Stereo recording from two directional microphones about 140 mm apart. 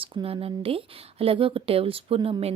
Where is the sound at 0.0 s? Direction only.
40° right (ahead or behind).